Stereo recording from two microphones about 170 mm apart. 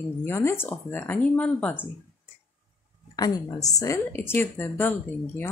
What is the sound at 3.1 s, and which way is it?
A woman's voice, 20° left (ahead or behind).